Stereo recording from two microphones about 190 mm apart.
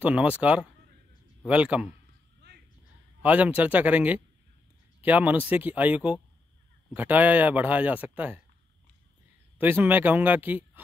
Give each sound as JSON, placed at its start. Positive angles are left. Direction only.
{"t": 0.0, "sound": "speech", "side_deg": -5}
{"t": 2.4, "sound": "a sound", "side_deg": -65}
{"t": 3.2, "sound": "speech", "side_deg": -5}
{"t": 9.6, "sound": "speech", "side_deg": -10}